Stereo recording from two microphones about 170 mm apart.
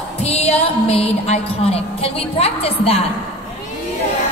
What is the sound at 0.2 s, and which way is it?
A woman's voice, 40° left (ahead or behind).